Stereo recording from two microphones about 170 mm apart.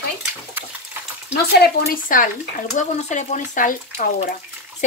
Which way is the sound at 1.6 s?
50° left (ahead or behind).